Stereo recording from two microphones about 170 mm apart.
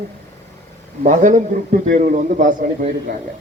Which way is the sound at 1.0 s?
50° right (ahead or behind).